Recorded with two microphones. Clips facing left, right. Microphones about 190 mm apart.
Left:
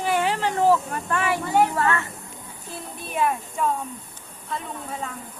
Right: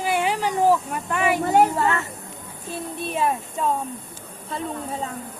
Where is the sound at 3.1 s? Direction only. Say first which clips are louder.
Left 1 dB; 30° right (ahead or behind).